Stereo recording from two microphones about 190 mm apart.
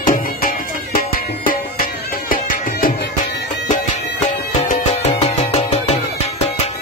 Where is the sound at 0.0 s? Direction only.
45° left (ahead or behind).